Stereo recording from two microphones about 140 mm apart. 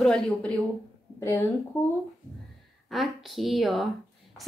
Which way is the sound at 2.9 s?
Centre (ahead or behind).